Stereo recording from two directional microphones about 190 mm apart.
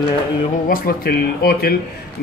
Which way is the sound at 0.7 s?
50° left (ahead or behind).